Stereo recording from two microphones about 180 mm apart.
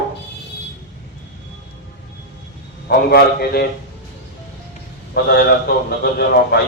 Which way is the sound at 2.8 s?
60° left (ahead or behind).